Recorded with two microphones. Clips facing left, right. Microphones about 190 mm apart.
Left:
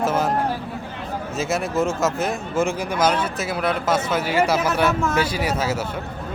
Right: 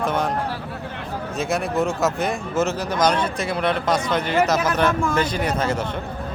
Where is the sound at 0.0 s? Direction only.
5° left (ahead or behind).